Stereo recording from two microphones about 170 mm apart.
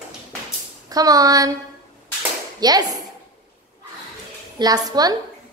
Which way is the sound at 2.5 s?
25° right (ahead or behind).